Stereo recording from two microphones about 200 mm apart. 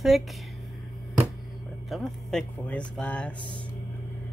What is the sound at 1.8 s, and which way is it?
Speech, centre (ahead or behind).